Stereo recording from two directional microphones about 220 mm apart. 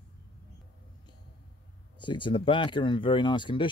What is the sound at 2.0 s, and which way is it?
Speech, 20° left (ahead or behind).